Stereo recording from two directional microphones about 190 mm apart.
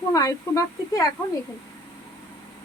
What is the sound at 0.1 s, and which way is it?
Speech, 20° left (ahead or behind).